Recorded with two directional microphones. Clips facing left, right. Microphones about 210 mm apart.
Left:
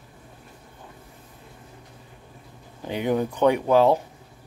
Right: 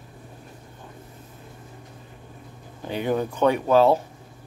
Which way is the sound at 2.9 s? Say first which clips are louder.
Left 1 dB; 15° left (ahead or behind).